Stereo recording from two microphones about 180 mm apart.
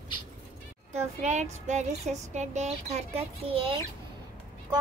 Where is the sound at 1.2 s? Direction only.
40° right (ahead or behind).